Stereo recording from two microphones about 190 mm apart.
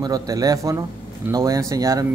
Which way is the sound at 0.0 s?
20° right (ahead or behind).